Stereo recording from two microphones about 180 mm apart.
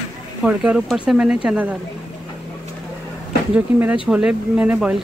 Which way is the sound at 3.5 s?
5° right (ahead or behind).